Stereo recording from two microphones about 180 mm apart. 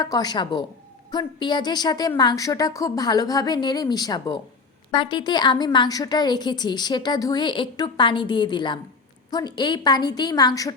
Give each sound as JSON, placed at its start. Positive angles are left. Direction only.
{"t": 0.0, "sound": "a woman's voice", "side_deg": 20}